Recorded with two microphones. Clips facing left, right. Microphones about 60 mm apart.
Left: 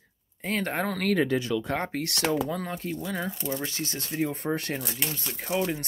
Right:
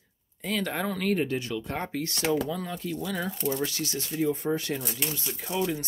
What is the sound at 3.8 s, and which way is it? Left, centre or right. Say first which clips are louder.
Speech: right 1 dB; left.